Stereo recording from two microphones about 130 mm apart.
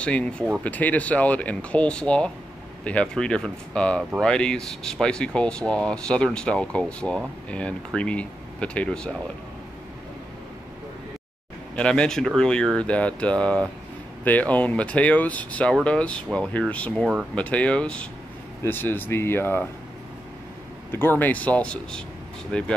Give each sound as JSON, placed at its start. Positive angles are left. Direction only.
{"t": 0.0, "sound": "speech", "side_deg": 10}
{"t": 11.7, "sound": "speech", "side_deg": 5}
{"t": 20.9, "sound": "speech", "side_deg": 15}